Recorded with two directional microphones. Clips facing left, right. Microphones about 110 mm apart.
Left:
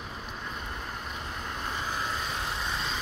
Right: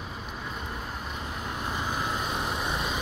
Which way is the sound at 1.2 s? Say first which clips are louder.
Right 3 dB; 10° right (ahead or behind).